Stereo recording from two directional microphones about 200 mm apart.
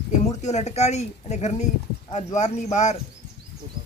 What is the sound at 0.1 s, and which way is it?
Speech, 35° left (ahead or behind).